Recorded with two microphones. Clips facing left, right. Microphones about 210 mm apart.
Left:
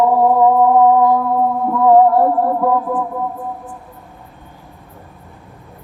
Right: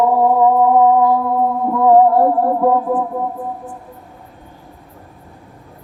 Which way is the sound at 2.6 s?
25° right (ahead or behind).